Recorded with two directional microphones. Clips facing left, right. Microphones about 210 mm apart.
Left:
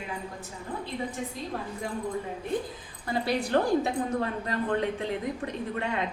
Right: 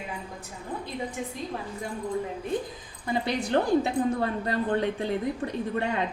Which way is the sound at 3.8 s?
30° right (ahead or behind).